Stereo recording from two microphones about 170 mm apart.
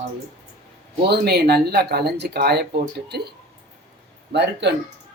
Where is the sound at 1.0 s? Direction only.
70° right (ahead or behind).